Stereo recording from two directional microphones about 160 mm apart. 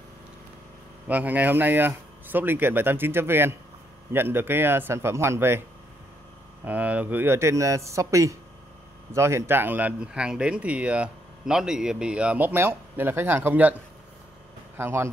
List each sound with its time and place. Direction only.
1.0 s speech: 10° right (ahead or behind)
6.6 s speech: 10° right (ahead or behind)
14.8 s speech: 15° right (ahead or behind)